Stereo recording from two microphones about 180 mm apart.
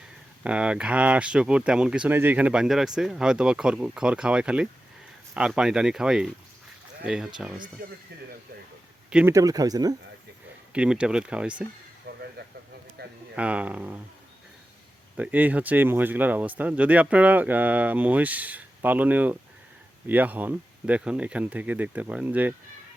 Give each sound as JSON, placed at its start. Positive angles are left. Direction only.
{"t": 0.4, "sound": "speech", "side_deg": -5}
{"t": 9.0, "sound": "speech", "side_deg": -5}
{"t": 9.3, "sound": "speech", "side_deg": -20}
{"t": 10.7, "sound": "speech", "side_deg": -5}
{"t": 12.1, "sound": "a sound", "side_deg": -55}
{"t": 13.3, "sound": "speech", "side_deg": -5}
{"t": 15.1, "sound": "speech", "side_deg": -10}